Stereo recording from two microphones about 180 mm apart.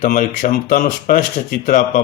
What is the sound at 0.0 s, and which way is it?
Speech, 45° left (ahead or behind).